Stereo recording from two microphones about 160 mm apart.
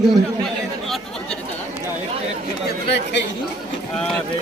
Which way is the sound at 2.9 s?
90° left.